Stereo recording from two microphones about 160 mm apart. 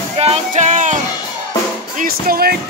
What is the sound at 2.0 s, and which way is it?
Speech, 70° right (ahead or behind).